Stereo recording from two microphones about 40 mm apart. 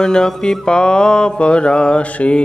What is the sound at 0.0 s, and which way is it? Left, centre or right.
Mantra, centre.